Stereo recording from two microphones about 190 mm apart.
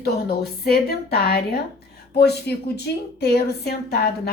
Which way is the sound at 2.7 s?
60° left (ahead or behind).